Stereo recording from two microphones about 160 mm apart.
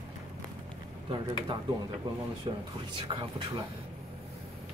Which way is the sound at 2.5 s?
30° right (ahead or behind).